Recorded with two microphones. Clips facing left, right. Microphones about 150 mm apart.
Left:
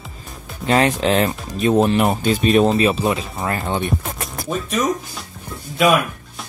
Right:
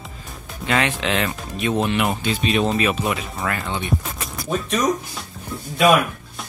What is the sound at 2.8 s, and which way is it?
Speech, 30° left (ahead or behind).